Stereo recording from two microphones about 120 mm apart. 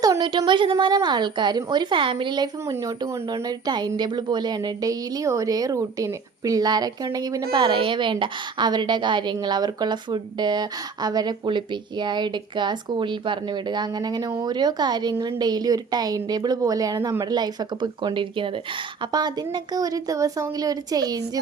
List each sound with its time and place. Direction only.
0.0 s a sound: 30° right (ahead or behind)
0.3 s speech: 40° right (ahead or behind)
2.7 s speech: 25° right (ahead or behind)